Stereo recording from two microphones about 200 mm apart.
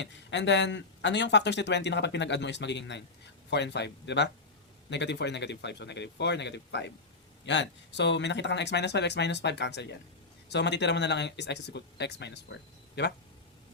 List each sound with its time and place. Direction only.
0.0 s speech: 60° left (ahead or behind)